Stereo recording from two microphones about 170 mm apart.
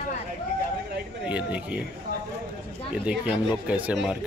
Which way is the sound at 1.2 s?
10° right (ahead or behind).